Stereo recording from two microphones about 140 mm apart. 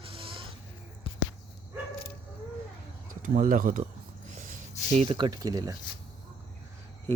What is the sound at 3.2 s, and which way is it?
Speech, 80° right.